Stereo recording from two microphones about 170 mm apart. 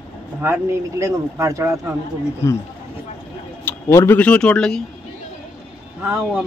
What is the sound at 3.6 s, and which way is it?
Speech, 15° left (ahead or behind).